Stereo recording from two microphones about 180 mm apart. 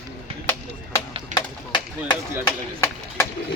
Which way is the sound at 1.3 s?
25° left (ahead or behind).